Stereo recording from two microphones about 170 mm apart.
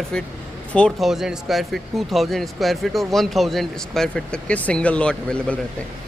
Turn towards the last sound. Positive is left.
turn(degrees=5)  # may be behind; listen again after turning